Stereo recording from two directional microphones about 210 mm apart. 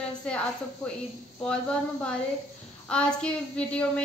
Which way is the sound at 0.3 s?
5° left (ahead or behind).